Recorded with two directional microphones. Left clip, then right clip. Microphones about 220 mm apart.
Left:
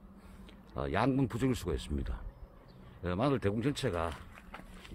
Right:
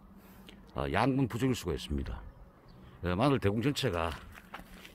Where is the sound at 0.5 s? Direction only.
10° right (ahead or behind).